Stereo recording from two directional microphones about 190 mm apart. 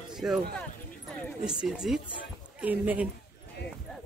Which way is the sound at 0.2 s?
5° right (ahead or behind).